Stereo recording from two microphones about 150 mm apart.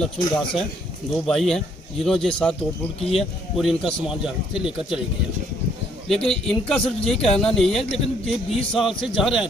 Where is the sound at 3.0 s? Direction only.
40° left (ahead or behind).